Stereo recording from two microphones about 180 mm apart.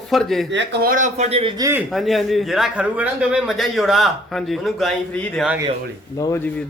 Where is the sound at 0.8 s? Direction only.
45° right (ahead or behind).